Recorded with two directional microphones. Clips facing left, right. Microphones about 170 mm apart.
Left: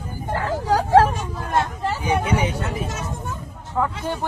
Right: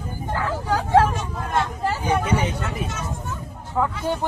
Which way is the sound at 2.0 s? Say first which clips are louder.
Left 1 dB; 10° left (ahead or behind).